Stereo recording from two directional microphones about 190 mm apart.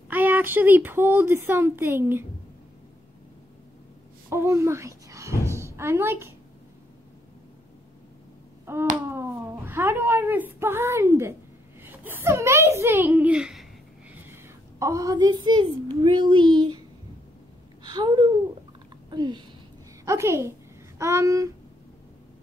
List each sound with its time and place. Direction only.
0.1 s speech: 10° right (ahead or behind)
4.3 s a woman's voice: 15° right (ahead or behind)
8.7 s finger snapping: 15° right (ahead or behind)
9.1 s a child's voice: 10° right (ahead or behind)
17.8 s speech: 20° right (ahead or behind)